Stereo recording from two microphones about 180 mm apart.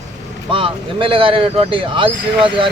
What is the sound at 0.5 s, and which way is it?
Speech, 30° right (ahead or behind).